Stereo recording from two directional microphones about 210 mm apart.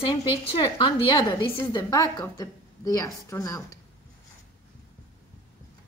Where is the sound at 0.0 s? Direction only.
25° left (ahead or behind).